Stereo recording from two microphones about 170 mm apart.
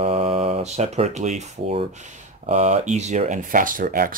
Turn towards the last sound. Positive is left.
turn(degrees=-55)  # may be behind; listen again after turning